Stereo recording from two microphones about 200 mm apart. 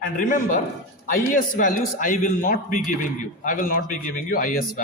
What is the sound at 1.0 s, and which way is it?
A man's voice, 40° left (ahead or behind).